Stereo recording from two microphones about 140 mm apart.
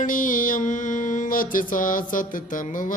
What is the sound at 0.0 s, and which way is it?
Mantra, 70° left (ahead or behind).